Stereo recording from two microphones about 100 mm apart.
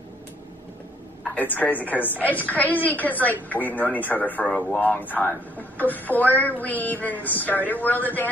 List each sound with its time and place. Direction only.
1.2 s a woman's voice: 15° left (ahead or behind)